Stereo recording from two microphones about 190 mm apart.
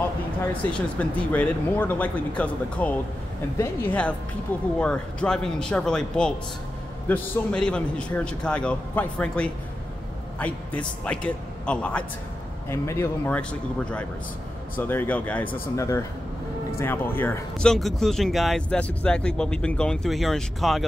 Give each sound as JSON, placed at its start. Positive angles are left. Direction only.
{"t": 0.7, "sound": "speech", "side_deg": 10}